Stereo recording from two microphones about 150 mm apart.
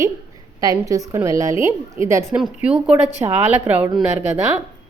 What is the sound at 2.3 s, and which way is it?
A woman's voice, 5° right (ahead or behind).